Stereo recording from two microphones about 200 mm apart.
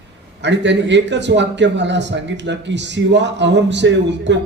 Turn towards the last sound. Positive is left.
turn(degrees=-60)  # may be behind; listen again after turning